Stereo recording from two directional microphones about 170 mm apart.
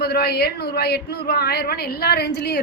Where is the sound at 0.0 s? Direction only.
70° left (ahead or behind).